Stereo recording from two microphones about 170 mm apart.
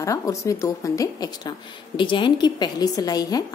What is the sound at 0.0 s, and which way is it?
A woman's voice, 20° left (ahead or behind).